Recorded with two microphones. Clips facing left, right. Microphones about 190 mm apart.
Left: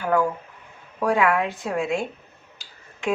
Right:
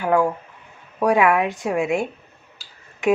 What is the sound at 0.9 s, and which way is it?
Speech, 15° right (ahead or behind).